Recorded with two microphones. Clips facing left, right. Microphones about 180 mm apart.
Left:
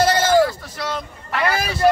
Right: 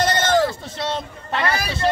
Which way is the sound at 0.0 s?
5° left (ahead or behind).